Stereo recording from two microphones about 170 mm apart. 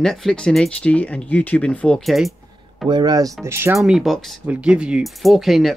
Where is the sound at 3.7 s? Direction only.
Centre (ahead or behind).